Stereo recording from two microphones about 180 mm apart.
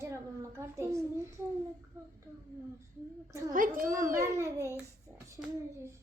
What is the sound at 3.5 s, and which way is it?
Speech, 50° right (ahead or behind).